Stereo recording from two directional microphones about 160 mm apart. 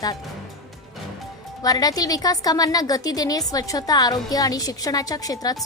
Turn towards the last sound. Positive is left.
turn(degrees=25)  # may be behind; listen again after turning